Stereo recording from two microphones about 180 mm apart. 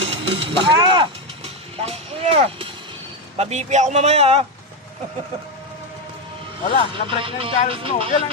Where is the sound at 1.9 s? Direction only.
35° right (ahead or behind).